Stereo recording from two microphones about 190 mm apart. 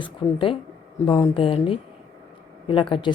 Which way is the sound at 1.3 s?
30° left (ahead or behind).